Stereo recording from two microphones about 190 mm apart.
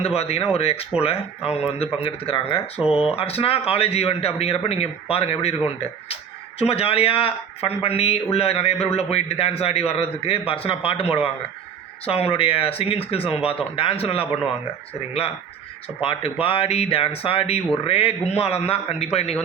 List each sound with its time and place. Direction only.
0.2 s speech: 30° left (ahead or behind)
16.0 s speech: 30° left (ahead or behind)